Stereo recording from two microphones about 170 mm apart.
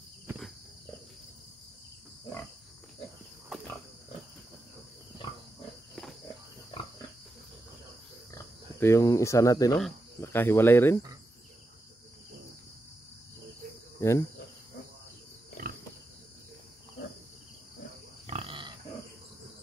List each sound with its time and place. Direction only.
8.4 s speech: 15° left (ahead or behind)
13.9 s cricket: 15° left (ahead or behind)
15.6 s pig: 60° right (ahead or behind)
18.2 s pig: 35° right (ahead or behind)